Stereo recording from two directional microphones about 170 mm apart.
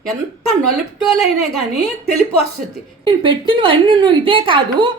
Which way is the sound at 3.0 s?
30° right (ahead or behind).